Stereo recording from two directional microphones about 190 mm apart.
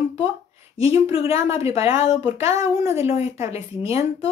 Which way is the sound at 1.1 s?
30° left (ahead or behind).